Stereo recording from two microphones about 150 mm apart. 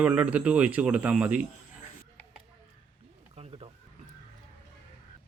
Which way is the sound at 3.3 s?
40° right (ahead or behind).